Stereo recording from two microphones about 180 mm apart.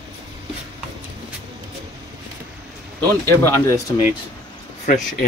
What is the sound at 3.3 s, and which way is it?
Speech, 15° left (ahead or behind).